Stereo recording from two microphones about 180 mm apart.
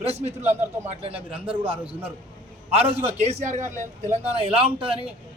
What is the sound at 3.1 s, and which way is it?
A man's voice, 40° right (ahead or behind).